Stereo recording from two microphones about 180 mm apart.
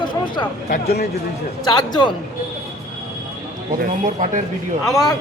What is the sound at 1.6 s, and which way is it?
Speech, 25° left (ahead or behind).